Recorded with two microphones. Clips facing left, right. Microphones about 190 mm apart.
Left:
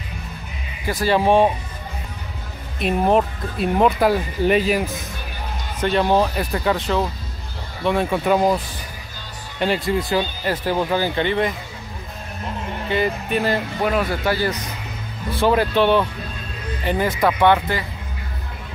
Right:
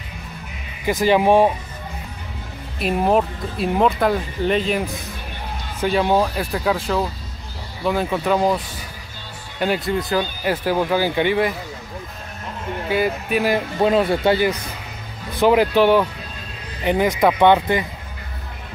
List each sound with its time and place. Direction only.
0.8 s speech: 15° right (ahead or behind)
2.8 s speech: centre (ahead or behind)
9.6 s speech: 5° right (ahead or behind)
10.4 s speech: 10° right (ahead or behind)
12.9 s speech: 5° right (ahead or behind)
13.7 s speech: 25° right (ahead or behind)